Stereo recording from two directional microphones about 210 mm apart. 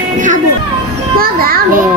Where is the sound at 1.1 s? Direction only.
45° right (ahead or behind).